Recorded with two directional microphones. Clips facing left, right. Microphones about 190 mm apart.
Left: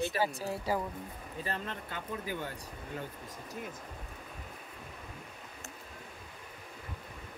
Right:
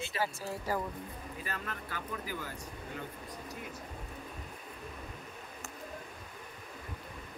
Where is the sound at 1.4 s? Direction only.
25° left (ahead or behind).